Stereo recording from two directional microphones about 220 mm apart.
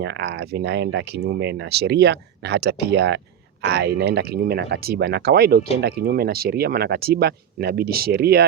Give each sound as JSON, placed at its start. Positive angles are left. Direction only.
{"t": 0.0, "sound": "speech", "side_deg": -50}